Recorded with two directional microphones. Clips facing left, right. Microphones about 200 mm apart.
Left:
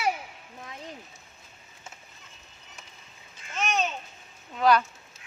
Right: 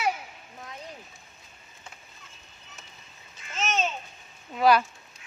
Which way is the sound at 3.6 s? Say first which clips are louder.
Left 1 dB; 15° left (ahead or behind).